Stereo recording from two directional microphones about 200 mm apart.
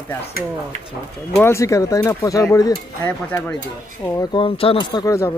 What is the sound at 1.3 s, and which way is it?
Speech, 10° left (ahead or behind).